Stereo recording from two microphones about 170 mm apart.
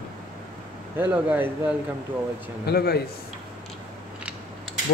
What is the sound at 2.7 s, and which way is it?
Speech, 70° left (ahead or behind).